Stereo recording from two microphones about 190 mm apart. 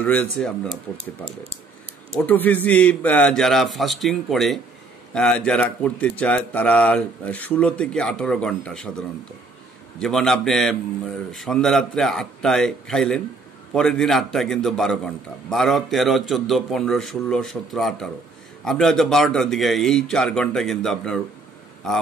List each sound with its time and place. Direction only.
0.0 s speech: 10° left (ahead or behind)
2.1 s speech: 10° left (ahead or behind)
9.9 s speech: centre (ahead or behind)